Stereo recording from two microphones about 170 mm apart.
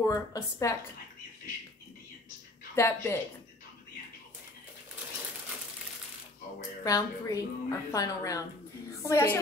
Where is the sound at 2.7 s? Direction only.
15° left (ahead or behind).